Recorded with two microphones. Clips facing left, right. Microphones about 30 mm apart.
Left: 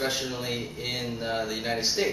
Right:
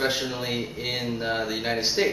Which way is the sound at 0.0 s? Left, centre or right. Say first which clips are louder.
Right 3 dB; centre.